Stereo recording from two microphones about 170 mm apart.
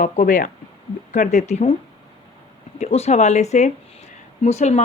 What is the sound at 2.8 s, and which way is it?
Speech, 40° left (ahead or behind).